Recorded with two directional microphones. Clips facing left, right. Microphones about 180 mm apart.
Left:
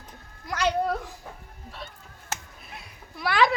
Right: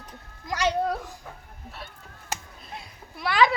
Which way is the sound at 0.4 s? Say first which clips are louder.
Even; 15° right (ahead or behind).